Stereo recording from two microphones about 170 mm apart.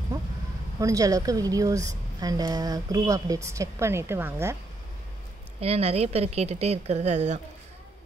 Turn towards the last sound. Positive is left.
turn(degrees=-45)  # may be behind; listen again after turning